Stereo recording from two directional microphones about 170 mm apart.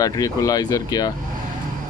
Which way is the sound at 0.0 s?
20° left (ahead or behind).